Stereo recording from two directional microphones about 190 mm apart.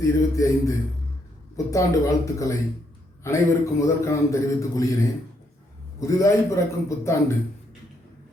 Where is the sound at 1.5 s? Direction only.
15° left (ahead or behind).